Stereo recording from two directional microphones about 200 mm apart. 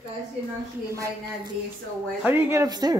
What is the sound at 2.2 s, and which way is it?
Speech, 10° right (ahead or behind).